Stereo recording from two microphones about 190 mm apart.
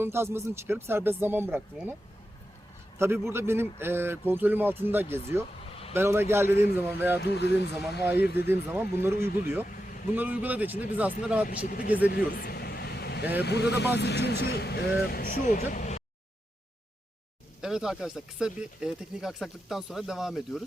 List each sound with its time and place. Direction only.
0.0 s speech: 10° right (ahead or behind)
3.0 s speech: 15° right (ahead or behind)
7.2 s speech: 60° left (ahead or behind)
8.4 s speech: 10° right (ahead or behind)
9.6 s vehicle: 45° left (ahead or behind)
10.2 s speech: 10° right (ahead or behind)
11.4 s speech: 45° left (ahead or behind)
12.3 s vehicle: 55° left (ahead or behind)
13.4 s speech: 60° left (ahead or behind); by 16.0 s 40° left (ahead or behind)
17.6 s speech: 5° right (ahead or behind)